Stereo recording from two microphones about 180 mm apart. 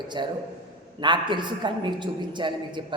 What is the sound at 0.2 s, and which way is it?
A man's voice, 25° right (ahead or behind).